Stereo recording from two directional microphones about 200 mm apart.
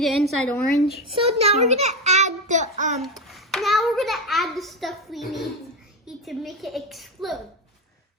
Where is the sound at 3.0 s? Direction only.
Centre (ahead or behind).